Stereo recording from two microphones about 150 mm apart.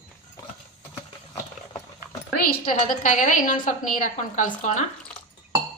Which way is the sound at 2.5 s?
65° left (ahead or behind).